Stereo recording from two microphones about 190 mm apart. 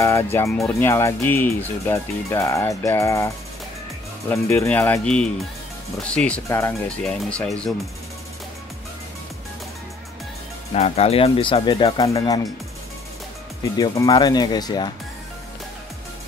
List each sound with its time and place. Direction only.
0.0 s speech: 15° left (ahead or behind)
4.3 s speech: 10° left (ahead or behind)
10.7 s speech: 35° left (ahead or behind)
13.7 s speech: 20° left (ahead or behind)